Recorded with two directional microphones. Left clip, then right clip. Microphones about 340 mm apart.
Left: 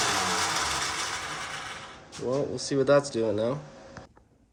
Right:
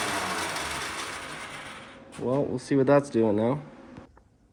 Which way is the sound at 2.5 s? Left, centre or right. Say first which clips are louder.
Even; centre.